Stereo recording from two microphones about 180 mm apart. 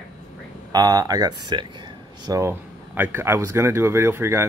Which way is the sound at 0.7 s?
20° right (ahead or behind).